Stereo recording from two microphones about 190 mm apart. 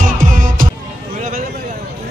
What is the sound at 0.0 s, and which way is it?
Music, 45° right (ahead or behind).